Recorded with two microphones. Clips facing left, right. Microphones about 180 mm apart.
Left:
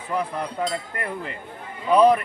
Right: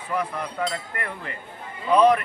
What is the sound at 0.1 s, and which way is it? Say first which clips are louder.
Speech: left 1 dB; 30° left (ahead or behind).